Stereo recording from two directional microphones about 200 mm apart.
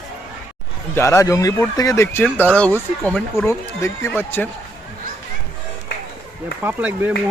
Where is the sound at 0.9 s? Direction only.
15° left (ahead or behind).